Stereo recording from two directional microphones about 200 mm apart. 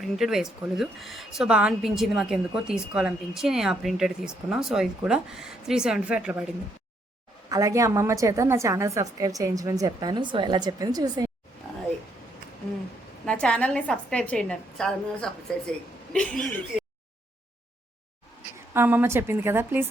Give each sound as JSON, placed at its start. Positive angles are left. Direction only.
{"t": 0.0, "sound": "a woman's voice", "side_deg": 0}
{"t": 7.5, "sound": "a woman's voice", "side_deg": -15}
{"t": 13.2, "sound": "a woman's voice", "side_deg": 5}
{"t": 18.7, "sound": "a woman's voice", "side_deg": -10}